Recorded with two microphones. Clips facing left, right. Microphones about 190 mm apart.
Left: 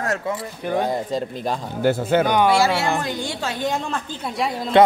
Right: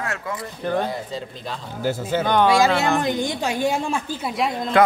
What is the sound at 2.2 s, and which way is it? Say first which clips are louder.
Speech: right 2 dB; 10° left (ahead or behind).